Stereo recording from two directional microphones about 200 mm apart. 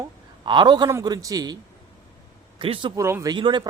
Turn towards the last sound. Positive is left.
turn(degrees=-25)  # may be behind; listen again after turning